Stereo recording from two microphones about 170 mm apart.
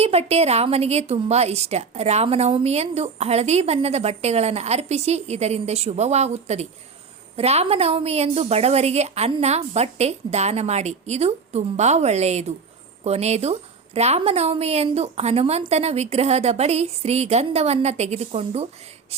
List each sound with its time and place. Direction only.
0.0 s a woman's voice: 35° right (ahead or behind)